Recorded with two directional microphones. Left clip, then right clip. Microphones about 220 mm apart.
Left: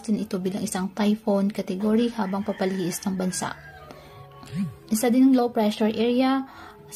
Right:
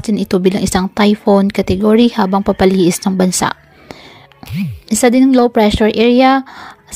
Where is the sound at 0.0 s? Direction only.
35° right (ahead or behind).